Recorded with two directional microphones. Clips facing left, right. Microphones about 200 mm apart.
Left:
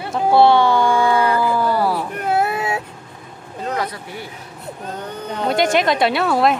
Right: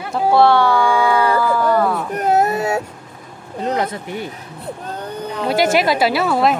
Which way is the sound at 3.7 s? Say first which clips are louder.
Right 4 dB; 25° right (ahead or behind).